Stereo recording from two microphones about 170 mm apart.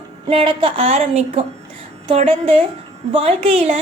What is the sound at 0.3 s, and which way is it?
A woman's voice, 30° right (ahead or behind).